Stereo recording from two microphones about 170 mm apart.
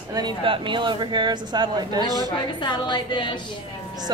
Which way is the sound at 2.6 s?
25° left (ahead or behind).